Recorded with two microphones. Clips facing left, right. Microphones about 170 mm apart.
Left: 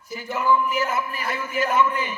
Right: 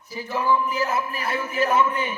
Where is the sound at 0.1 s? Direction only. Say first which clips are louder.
Left 1 dB; 30° right (ahead or behind).